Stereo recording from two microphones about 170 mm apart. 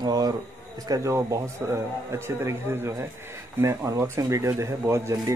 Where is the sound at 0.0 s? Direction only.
25° right (ahead or behind).